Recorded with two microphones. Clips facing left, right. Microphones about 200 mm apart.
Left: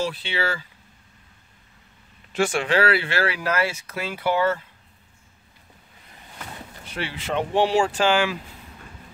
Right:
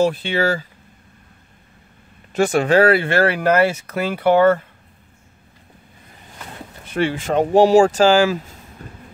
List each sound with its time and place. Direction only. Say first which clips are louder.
0.0 s speech: right 9 dB; 50° right (ahead or behind)
2.3 s speech: right 7 dB; 40° right (ahead or behind)
6.9 s speech: right 9 dB; 50° right (ahead or behind)
8.8 s vehicle: right 7 dB; 40° right (ahead or behind)